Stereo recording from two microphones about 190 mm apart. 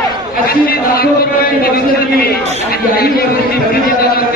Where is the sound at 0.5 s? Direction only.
50° left (ahead or behind).